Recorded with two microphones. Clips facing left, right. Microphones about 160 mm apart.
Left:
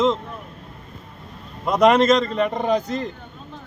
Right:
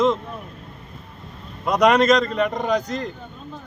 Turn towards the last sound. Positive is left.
turn(degrees=5)  # may be behind; listen again after turning